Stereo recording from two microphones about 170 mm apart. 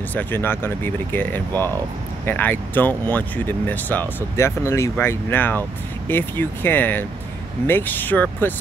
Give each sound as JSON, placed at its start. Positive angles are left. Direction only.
{"t": 0.1, "sound": "speech", "side_deg": 10}